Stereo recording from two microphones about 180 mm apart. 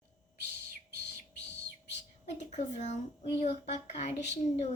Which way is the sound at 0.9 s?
70° left (ahead or behind).